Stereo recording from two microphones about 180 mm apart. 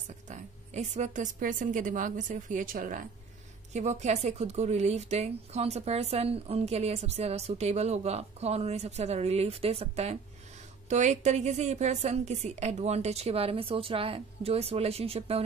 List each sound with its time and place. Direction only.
0.3 s a woman's voice: 40° right (ahead or behind)
3.7 s a woman's voice: 40° right (ahead or behind)